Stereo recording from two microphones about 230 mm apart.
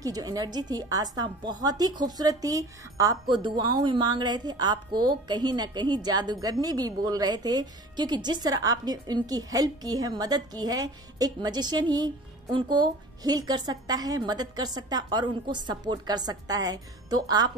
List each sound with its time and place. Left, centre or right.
0.0 s a woman's voice: centre